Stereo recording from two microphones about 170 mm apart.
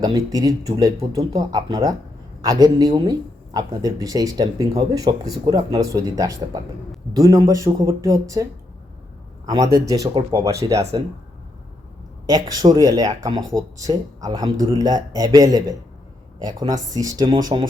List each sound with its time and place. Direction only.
0.0 s speech: 20° right (ahead or behind)
9.7 s speech: 20° right (ahead or behind)
12.2 s speech: 20° right (ahead or behind)